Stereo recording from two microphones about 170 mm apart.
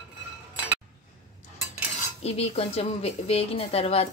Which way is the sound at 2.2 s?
35° left (ahead or behind).